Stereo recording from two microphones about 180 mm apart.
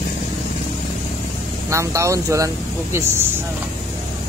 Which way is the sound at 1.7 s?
15° right (ahead or behind).